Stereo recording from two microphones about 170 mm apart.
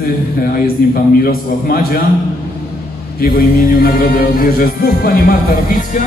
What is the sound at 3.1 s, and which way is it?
Music, 60° left (ahead or behind).